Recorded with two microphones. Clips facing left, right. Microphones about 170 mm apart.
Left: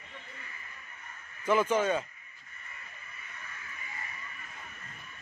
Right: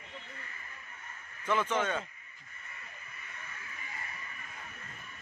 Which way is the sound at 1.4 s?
10° left (ahead or behind).